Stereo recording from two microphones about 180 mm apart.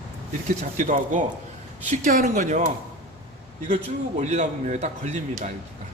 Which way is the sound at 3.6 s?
40° right (ahead or behind).